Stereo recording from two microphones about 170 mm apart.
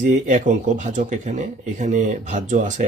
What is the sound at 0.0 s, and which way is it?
Speech, 45° right (ahead or behind).